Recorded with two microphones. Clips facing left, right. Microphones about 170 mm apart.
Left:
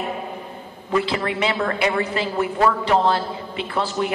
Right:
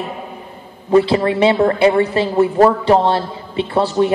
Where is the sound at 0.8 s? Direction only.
30° right (ahead or behind).